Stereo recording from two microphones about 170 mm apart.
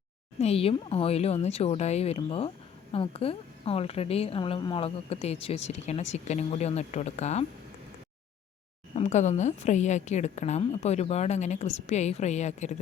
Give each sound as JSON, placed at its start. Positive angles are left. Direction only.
{"t": 0.3, "sound": "a woman's voice", "side_deg": 35}
{"t": 9.0, "sound": "a woman's voice", "side_deg": 45}